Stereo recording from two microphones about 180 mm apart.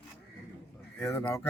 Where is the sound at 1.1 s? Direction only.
15° left (ahead or behind).